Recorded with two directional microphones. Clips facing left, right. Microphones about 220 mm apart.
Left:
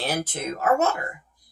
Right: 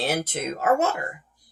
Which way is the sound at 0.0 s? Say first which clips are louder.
Right 2 dB; 25° right (ahead or behind).